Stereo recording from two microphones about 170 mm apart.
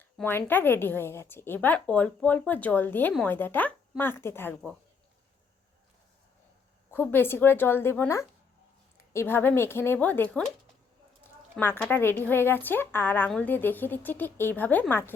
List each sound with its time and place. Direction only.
0.2 s a woman's voice: 10° left (ahead or behind)
6.9 s a woman's voice: 10° left (ahead or behind)
11.5 s a woman's voice: 10° left (ahead or behind)